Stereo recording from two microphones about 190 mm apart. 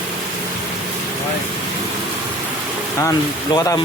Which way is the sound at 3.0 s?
15° left (ahead or behind).